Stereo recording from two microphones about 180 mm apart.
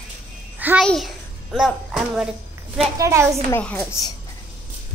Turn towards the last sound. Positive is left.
turn(degrees=10)  # may be behind; listen again after turning